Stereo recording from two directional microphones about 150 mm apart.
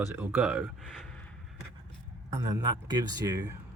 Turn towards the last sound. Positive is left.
turn(degrees=-25)  # may be behind; listen again after turning